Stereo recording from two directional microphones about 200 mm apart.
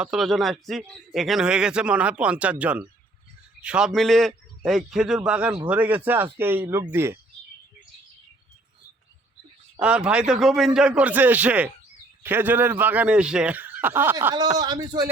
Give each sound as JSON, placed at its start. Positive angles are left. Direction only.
{"t": 0.0, "sound": "a man's voice", "side_deg": 0}
{"t": 9.8, "sound": "a man's voice", "side_deg": -5}
{"t": 14.3, "sound": "speech", "side_deg": -20}